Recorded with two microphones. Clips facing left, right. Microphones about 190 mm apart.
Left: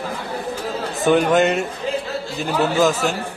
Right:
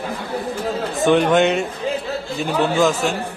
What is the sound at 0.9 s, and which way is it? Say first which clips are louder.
A man's voice: even; centre (ahead or behind).